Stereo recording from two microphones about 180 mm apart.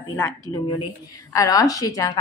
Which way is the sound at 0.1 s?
15° left (ahead or behind).